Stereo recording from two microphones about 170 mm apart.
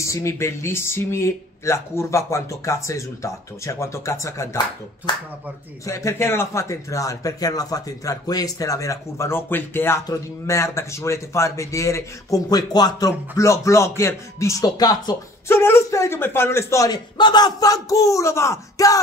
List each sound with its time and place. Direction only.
0.0 s a man's voice: 15° left (ahead or behind)
5.9 s a man's voice: 15° left (ahead or behind)